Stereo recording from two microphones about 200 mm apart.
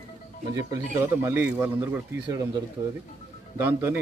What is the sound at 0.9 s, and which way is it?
Speech, 10° right (ahead or behind).